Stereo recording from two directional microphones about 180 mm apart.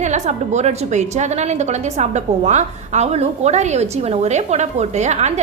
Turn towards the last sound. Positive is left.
turn(degrees=-40)  # may be behind; listen again after turning